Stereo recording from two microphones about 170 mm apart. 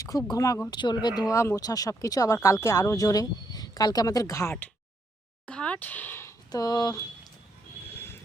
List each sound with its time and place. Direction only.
0.0 s speech: 20° left (ahead or behind)
7.9 s vehicle: 15° left (ahead or behind)